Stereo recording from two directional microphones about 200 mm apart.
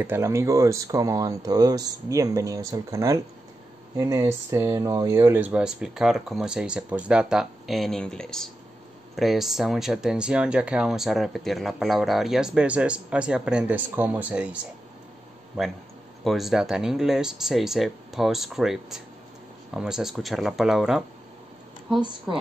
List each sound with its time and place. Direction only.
0.0 s speech: 15° right (ahead or behind)
16.3 s speech: centre (ahead or behind)